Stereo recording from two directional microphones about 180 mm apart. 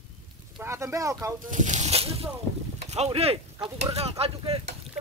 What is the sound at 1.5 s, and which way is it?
Speech, 40° right (ahead or behind).